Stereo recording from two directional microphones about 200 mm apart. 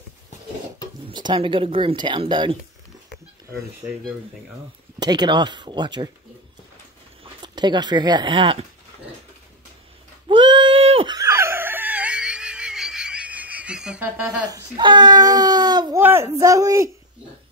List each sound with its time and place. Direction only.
1.0 s speech: 25° right (ahead or behind)
4.9 s speech: 20° right (ahead or behind)
7.4 s speech: 20° right (ahead or behind)
10.2 s a sound: 25° right (ahead or behind); by 14.3 s 5° right (ahead or behind)
14.5 s a woman's voice: 20° right (ahead or behind)